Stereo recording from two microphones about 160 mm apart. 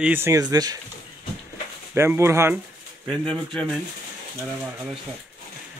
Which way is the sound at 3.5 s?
Centre (ahead or behind).